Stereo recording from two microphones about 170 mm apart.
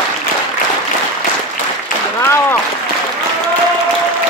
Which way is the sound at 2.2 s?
15° left (ahead or behind).